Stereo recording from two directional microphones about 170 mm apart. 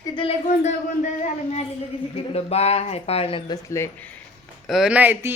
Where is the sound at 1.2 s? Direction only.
40° left (ahead or behind).